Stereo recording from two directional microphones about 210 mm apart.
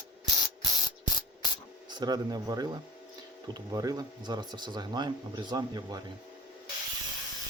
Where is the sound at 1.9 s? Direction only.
20° right (ahead or behind).